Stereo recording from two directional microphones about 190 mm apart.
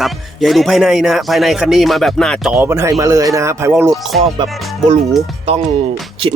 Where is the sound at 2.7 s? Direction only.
15° right (ahead or behind).